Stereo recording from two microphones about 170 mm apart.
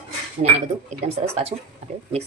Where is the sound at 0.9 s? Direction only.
40° right (ahead or behind).